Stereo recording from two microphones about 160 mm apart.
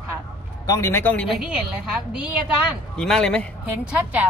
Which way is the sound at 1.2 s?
5° right (ahead or behind).